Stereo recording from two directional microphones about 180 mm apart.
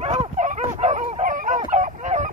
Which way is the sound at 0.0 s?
35° right (ahead or behind).